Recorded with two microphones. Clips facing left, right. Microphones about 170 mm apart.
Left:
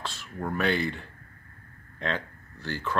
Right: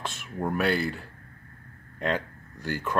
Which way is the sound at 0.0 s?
20° right (ahead or behind).